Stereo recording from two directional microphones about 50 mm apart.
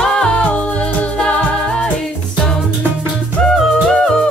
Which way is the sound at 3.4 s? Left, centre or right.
Centre.